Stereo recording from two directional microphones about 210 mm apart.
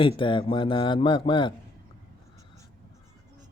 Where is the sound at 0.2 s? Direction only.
25° left (ahead or behind).